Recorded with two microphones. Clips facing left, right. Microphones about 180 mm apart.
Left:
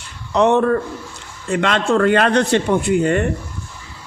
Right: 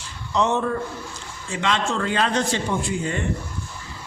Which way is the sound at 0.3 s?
60° left (ahead or behind).